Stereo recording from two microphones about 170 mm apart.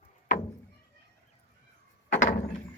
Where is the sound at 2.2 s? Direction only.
50° left (ahead or behind).